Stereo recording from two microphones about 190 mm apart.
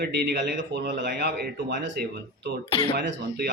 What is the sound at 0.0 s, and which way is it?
Speech, 65° right (ahead or behind).